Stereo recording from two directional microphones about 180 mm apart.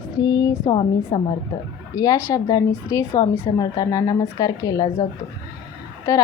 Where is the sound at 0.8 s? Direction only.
30° left (ahead or behind).